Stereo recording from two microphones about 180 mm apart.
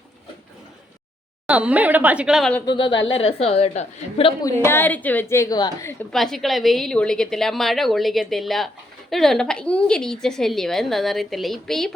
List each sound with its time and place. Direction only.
1.5 s a woman's voice: 5° right (ahead or behind)
2.6 s a woman's voice: 25° left (ahead or behind)
4.4 s a woman's voice: 15° left (ahead or behind)
5.9 s a woman's voice: 5° left (ahead or behind)